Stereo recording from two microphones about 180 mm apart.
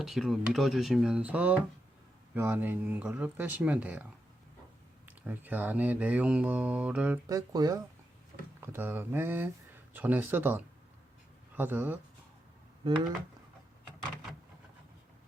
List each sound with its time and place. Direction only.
0.0 s speech: centre (ahead or behind)
2.3 s mantra: 10° right (ahead or behind)
5.0 s mantra: 10° right (ahead or behind)
7.3 s speech: 20° right (ahead or behind)
8.6 s mantra: 10° right (ahead or behind)